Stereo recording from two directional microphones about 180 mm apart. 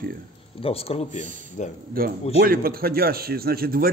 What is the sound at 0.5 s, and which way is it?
Speech, 30° left (ahead or behind).